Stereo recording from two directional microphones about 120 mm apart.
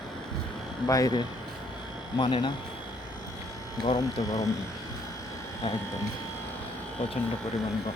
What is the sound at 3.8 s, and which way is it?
Speech, 35° left (ahead or behind).